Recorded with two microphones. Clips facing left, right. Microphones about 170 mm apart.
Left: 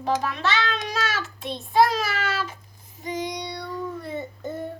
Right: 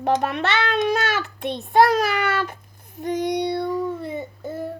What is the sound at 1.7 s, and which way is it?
Child singing, 60° right (ahead or behind).